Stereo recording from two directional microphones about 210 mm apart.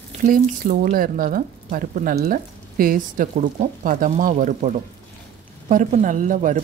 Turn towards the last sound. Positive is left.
turn(degrees=-35)  # may be behind; listen again after turning